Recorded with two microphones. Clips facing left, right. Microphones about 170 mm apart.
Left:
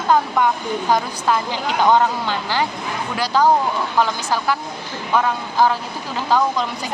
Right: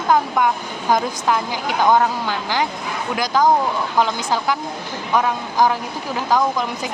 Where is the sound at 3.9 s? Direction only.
20° right (ahead or behind).